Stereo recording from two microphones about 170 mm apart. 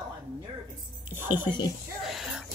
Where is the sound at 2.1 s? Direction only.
Centre (ahead or behind).